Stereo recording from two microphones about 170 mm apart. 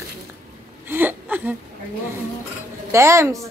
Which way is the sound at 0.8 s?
10° right (ahead or behind).